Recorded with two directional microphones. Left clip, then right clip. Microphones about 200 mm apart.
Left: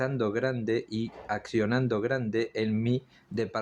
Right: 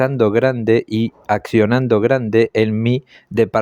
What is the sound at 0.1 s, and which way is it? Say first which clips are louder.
Speech: right 14 dB; 45° right (ahead or behind).